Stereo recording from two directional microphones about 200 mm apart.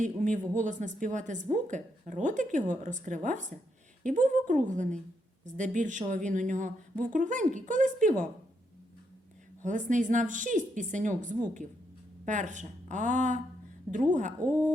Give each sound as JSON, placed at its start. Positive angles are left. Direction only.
{"t": 0.0, "sound": "a woman's voice", "side_deg": -40}
{"t": 9.6, "sound": "a woman's voice", "side_deg": -40}